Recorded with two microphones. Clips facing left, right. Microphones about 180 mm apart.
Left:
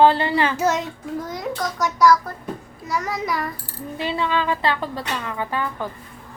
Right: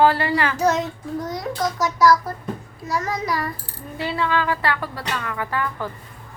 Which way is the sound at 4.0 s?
20° left (ahead or behind).